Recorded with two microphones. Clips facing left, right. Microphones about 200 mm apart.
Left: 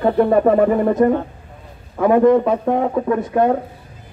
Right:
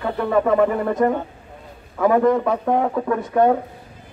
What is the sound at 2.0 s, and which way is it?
Speech, 25° left (ahead or behind).